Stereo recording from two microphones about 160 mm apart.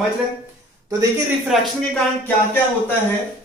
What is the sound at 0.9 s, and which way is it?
Speech, 20° right (ahead or behind).